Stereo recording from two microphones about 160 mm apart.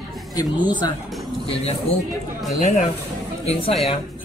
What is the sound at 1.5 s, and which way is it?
A man's voice, 40° left (ahead or behind).